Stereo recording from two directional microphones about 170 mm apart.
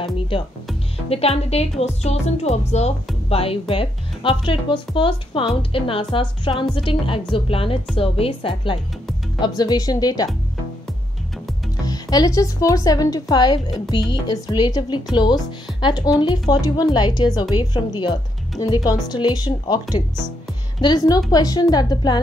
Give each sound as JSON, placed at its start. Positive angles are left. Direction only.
{"t": 1.0, "sound": "a woman's voice", "side_deg": 35}
{"t": 11.8, "sound": "speech", "side_deg": 20}